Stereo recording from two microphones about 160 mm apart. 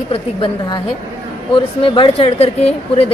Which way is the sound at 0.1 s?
30° left (ahead or behind).